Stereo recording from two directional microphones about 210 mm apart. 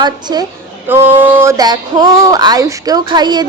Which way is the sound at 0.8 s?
10° right (ahead or behind).